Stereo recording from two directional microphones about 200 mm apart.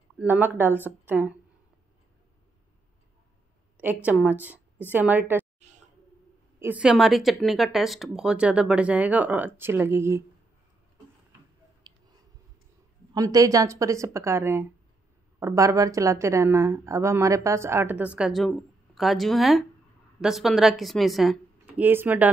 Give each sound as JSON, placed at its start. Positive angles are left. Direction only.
{"t": 0.2, "sound": "a woman's voice", "side_deg": -10}
{"t": 3.7, "sound": "a woman's voice", "side_deg": -10}
{"t": 5.6, "sound": "a sound", "side_deg": -35}
{"t": 6.6, "sound": "speech", "side_deg": -5}
{"t": 11.9, "sound": "a sound", "side_deg": -20}
{"t": 13.1, "sound": "a woman's voice", "side_deg": -15}